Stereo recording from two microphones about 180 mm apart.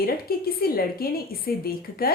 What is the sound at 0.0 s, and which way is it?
Speech, 55° left (ahead or behind).